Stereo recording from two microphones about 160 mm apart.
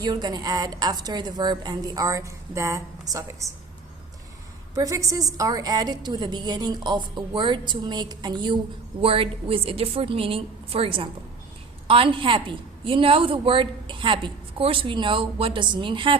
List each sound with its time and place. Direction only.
0.0 s a woman's voice: 25° right (ahead or behind)
4.7 s a woman's voice: 20° right (ahead or behind)